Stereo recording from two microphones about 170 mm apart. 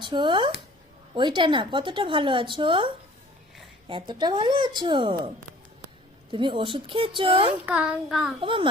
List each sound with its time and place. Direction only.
0.0 s a woman's voice: 25° right (ahead or behind)
6.3 s a woman's voice: 30° right (ahead or behind)
7.6 s child singing: 5° right (ahead or behind)
8.4 s a woman's voice: 30° right (ahead or behind)